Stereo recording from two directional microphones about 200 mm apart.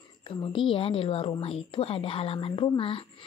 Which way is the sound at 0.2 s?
25° left (ahead or behind).